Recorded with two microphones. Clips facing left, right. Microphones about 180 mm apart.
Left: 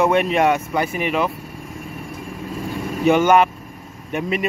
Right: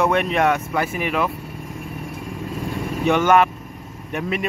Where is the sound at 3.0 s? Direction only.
Centre (ahead or behind).